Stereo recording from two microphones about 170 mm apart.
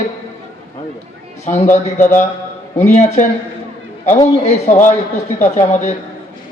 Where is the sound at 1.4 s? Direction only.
45° left (ahead or behind).